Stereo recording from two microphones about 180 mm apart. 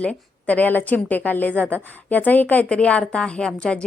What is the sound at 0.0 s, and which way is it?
A woman's voice, 5° left (ahead or behind).